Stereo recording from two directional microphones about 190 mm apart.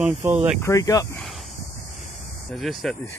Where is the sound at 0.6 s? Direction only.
20° left (ahead or behind).